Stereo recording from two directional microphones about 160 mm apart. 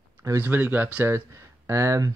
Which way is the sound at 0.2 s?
15° right (ahead or behind).